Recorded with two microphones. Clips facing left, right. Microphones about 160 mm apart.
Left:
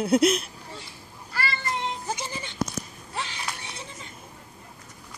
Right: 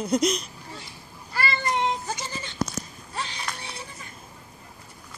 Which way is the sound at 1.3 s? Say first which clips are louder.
Right 3 dB; 15° right (ahead or behind).